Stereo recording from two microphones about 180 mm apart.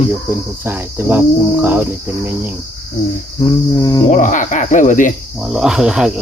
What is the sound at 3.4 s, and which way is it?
Cricket, 20° left (ahead or behind).